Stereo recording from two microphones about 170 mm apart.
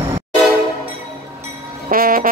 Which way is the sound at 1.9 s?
55° right (ahead or behind).